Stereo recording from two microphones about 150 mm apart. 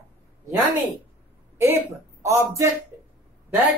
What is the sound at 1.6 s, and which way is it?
Speech, 20° right (ahead or behind).